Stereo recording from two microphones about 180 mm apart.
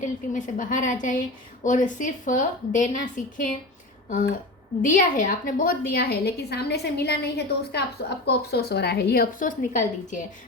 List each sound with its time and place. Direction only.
0.0 s a woman's voice: 45° left (ahead or behind)
4.8 s a woman's voice: 45° left (ahead or behind)